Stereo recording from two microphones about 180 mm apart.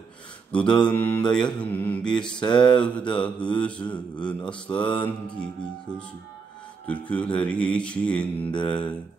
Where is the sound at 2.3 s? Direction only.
25° left (ahead or behind).